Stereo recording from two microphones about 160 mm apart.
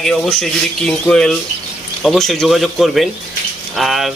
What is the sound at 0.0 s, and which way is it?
A man's voice, centre (ahead or behind).